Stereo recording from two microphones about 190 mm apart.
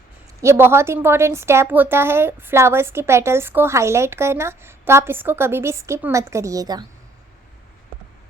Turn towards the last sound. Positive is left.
turn(degrees=-20)  # may be behind; listen again after turning